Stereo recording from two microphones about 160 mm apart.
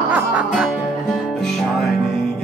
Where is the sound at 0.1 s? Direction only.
10° right (ahead or behind).